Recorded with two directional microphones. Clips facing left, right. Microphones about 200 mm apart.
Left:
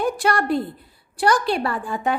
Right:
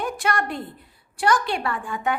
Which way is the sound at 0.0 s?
35° left (ahead or behind).